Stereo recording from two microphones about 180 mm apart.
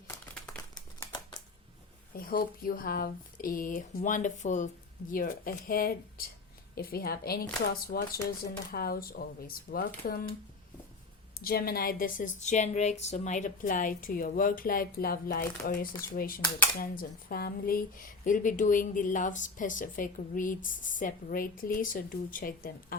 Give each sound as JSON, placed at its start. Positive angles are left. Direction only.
{"t": 0.9, "sound": "a sound", "side_deg": 20}
{"t": 2.1, "sound": "a woman's voice", "side_deg": 55}
{"t": 11.3, "sound": "speech", "side_deg": 55}
{"t": 12.4, "sound": "a woman's voice", "side_deg": 40}